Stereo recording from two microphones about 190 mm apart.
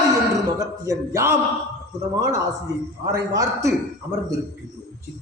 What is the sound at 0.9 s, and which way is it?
Speech, 15° right (ahead or behind).